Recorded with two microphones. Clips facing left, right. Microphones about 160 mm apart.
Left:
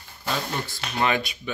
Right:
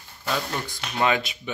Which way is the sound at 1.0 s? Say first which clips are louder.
Right 2 dB; 20° right (ahead or behind).